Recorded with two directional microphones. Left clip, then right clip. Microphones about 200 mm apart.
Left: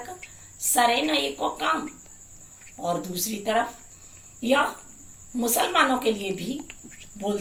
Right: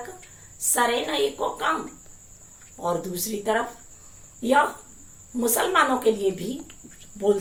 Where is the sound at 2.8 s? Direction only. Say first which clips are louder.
Right 1 dB; 20° right (ahead or behind).